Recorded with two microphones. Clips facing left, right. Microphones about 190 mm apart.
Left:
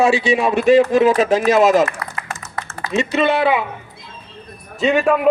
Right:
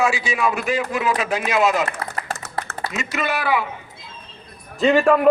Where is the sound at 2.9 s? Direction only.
30° left (ahead or behind).